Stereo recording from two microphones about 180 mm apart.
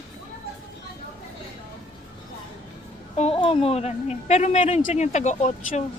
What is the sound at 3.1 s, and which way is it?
A woman's voice, 35° left (ahead or behind).